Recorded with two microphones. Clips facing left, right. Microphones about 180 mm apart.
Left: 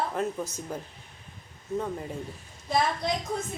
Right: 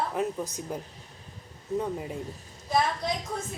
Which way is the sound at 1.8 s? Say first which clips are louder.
Right 1 dB; 10° right (ahead or behind).